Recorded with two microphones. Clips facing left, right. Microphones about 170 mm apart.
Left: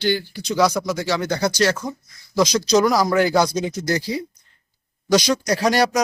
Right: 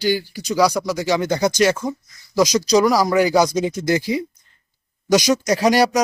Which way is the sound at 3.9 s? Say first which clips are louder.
Right 4 dB; 20° right (ahead or behind).